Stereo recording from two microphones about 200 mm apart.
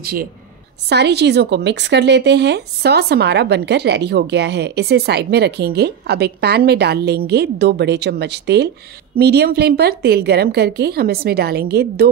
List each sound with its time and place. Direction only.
0.0 s a woman's voice: 50° right (ahead or behind)